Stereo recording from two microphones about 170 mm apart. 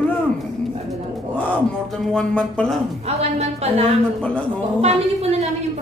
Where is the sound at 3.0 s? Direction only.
40° right (ahead or behind).